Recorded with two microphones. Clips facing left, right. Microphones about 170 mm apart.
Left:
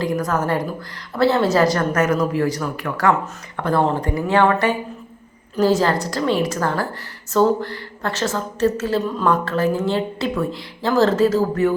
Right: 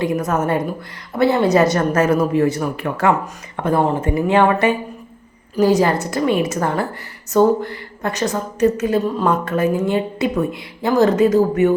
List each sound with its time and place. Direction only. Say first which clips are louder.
0.0 s a woman's voice: right 2 dB; 20° right (ahead or behind)